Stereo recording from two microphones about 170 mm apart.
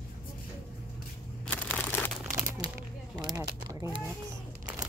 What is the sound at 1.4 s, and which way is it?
Crumpling, 10° left (ahead or behind).